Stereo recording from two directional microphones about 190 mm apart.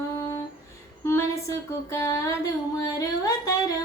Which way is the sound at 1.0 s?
15° left (ahead or behind).